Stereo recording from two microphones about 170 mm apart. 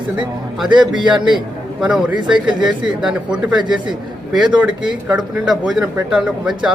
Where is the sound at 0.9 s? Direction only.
25° right (ahead or behind).